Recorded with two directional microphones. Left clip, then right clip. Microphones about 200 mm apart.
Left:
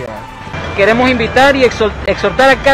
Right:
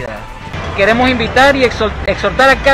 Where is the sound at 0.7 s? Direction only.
20° left (ahead or behind).